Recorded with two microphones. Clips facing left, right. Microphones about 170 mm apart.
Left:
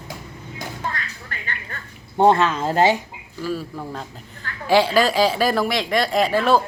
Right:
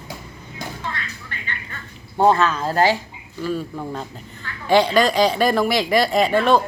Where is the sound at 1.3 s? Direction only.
45° left (ahead or behind).